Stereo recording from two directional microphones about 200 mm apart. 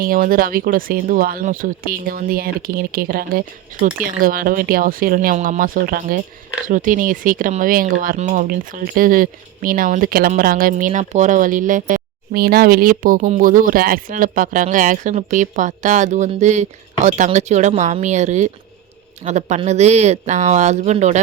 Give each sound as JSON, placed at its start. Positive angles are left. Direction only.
{"t": 0.0, "sound": "speech", "side_deg": -45}